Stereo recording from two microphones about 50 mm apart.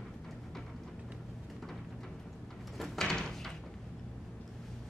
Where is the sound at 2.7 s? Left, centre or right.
Centre.